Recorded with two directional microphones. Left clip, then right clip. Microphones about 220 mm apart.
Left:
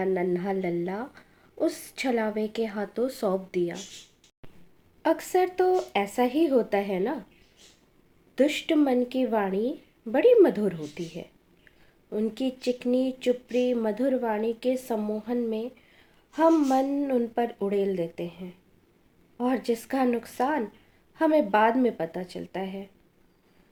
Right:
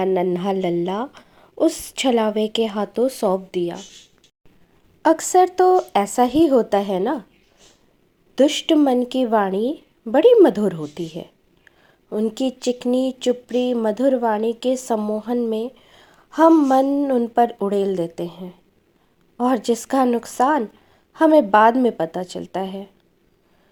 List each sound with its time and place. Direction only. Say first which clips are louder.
0.0 s a woman's voice: right 7 dB; 30° right (ahead or behind)
5.0 s speech: right 9 dB; 30° right (ahead or behind)
8.4 s a woman's voice: right 7 dB; 25° right (ahead or behind)